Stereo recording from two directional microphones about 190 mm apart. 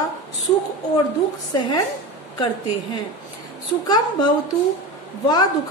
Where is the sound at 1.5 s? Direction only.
20° left (ahead or behind).